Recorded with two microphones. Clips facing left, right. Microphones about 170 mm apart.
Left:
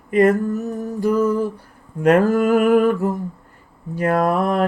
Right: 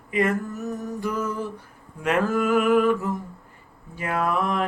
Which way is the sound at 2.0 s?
40° left (ahead or behind).